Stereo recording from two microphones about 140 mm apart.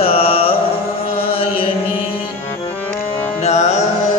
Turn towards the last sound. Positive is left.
turn(degrees=55)  # may be behind; listen again after turning